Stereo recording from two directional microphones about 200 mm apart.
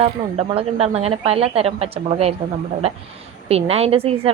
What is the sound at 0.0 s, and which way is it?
A woman's voice, 30° right (ahead or behind).